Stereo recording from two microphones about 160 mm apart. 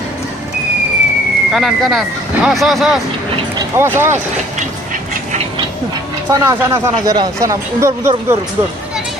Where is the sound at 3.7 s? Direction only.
15° right (ahead or behind).